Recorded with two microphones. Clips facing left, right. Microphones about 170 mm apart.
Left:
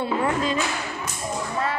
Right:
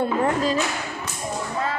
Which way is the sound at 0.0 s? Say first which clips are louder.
Right 2 dB; 40° right (ahead or behind).